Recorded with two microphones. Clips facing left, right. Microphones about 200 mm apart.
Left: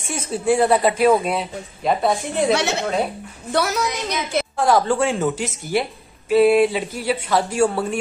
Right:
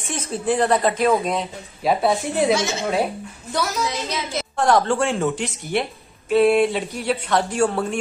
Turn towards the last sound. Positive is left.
turn(degrees=5)  # may be behind; listen again after turning